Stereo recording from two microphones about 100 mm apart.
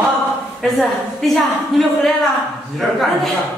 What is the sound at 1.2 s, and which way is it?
Speech, centre (ahead or behind).